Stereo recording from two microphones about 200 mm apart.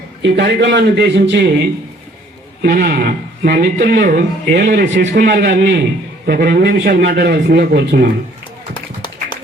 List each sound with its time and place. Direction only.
0.2 s a man's voice: 60° right (ahead or behind)
2.6 s a man's voice: 45° right (ahead or behind); by 5.8 s 60° right (ahead or behind)
6.2 s speech: 50° right (ahead or behind)
8.7 s a sound: 20° left (ahead or behind)